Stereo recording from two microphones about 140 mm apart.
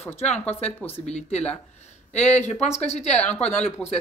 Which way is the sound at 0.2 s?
50° left (ahead or behind).